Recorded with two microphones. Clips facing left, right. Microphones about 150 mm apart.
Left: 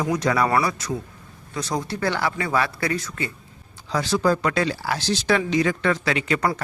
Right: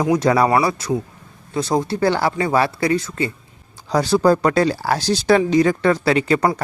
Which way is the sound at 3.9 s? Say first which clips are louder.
Right 6 dB; 40° right (ahead or behind).